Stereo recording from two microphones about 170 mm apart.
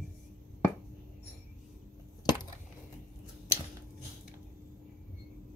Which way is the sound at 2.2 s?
25° left (ahead or behind).